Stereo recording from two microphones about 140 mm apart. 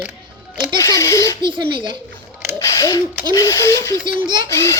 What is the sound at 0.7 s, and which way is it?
Speech, 20° left (ahead or behind).